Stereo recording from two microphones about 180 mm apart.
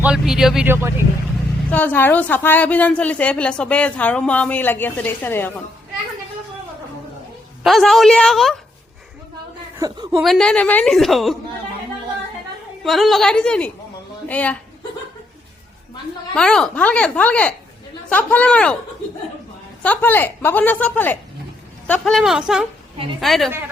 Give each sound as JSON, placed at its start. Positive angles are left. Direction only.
{"t": 0.0, "sound": "speech", "side_deg": -5}
{"t": 1.7, "sound": "a woman's voice", "side_deg": 10}
{"t": 7.6, "sound": "a woman's voice", "side_deg": 0}
{"t": 9.7, "sound": "a man's voice", "side_deg": -20}
{"t": 10.2, "sound": "a woman's voice", "side_deg": 5}
{"t": 12.8, "sound": "a woman's voice", "side_deg": 0}
{"t": 16.3, "sound": "a woman's voice", "side_deg": 5}
{"t": 19.8, "sound": "a woman's voice", "side_deg": 10}